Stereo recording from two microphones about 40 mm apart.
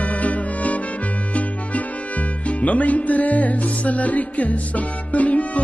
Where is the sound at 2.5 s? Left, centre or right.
Left.